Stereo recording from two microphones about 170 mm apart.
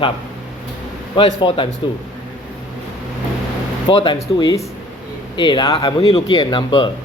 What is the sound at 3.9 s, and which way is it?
Speech, 30° left (ahead or behind).